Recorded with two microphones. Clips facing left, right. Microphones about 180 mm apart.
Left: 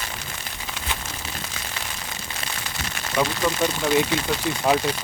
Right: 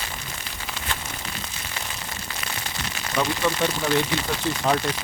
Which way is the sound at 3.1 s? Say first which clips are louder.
Left 1 dB; 5° left (ahead or behind).